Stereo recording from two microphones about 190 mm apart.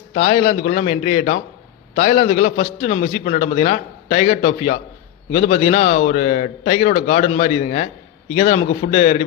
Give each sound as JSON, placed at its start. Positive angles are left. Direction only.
{"t": 0.1, "sound": "a man's voice", "side_deg": 50}
{"t": 0.3, "sound": "a man's voice", "side_deg": 40}